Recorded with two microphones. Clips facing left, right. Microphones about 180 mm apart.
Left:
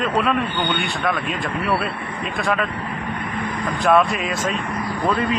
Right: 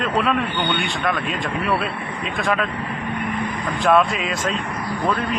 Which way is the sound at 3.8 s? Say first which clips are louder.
Even; centre (ahead or behind).